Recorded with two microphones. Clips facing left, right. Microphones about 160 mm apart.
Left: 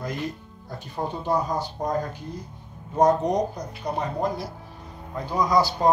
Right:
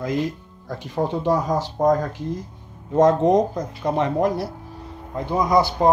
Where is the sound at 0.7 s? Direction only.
90° right.